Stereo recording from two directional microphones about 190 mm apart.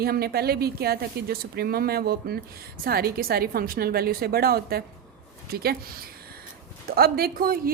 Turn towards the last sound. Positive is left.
turn(degrees=-50)  # may be behind; listen again after turning